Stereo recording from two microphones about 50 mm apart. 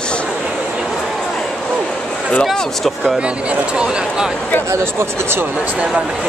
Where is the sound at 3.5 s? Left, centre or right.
Centre.